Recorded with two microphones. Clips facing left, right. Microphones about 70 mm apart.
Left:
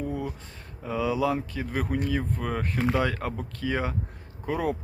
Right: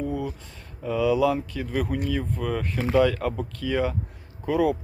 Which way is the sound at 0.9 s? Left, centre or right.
Left.